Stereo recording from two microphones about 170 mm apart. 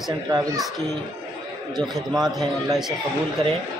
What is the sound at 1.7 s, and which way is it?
Speech, centre (ahead or behind).